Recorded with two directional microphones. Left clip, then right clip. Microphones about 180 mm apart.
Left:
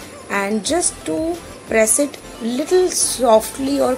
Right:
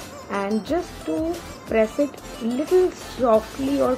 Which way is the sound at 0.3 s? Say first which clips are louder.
Left 5 dB; 25° left (ahead or behind).